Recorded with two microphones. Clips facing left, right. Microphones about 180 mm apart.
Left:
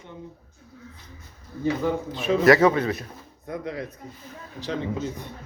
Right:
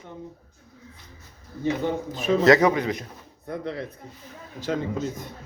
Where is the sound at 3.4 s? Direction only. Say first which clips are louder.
Even; 30° right (ahead or behind).